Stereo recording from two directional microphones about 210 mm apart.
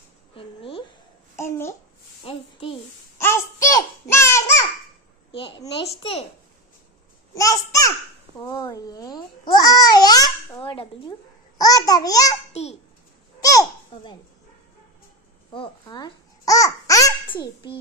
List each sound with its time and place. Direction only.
0.4 s a sound: 25° left (ahead or behind)
1.3 s babbling: 15° left (ahead or behind)
2.2 s a sound: 25° left (ahead or behind)
3.2 s babbling: 10° left (ahead or behind)
5.7 s babbling: 25° left (ahead or behind)
7.3 s babbling: 15° left (ahead or behind)
13.4 s babbling: 15° left (ahead or behind)
15.5 s babbling: 20° left (ahead or behind)